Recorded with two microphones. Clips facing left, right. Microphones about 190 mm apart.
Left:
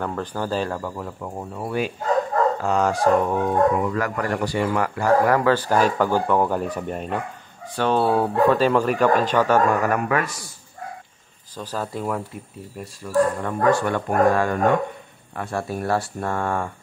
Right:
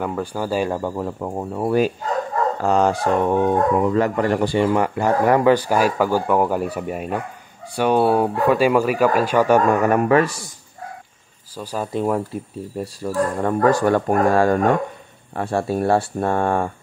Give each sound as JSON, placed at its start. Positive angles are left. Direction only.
{"t": 0.0, "sound": "speech", "side_deg": -10}
{"t": 0.7, "sound": "speech", "side_deg": -30}
{"t": 2.6, "sound": "speech", "side_deg": -30}
{"t": 9.9, "sound": "speech", "side_deg": -30}
{"t": 11.5, "sound": "speech", "side_deg": -10}
{"t": 12.7, "sound": "speech", "side_deg": -35}